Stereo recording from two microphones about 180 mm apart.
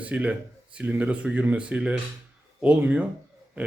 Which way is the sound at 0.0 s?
5° right (ahead or behind).